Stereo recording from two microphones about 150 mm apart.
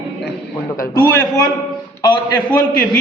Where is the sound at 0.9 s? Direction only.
25° left (ahead or behind).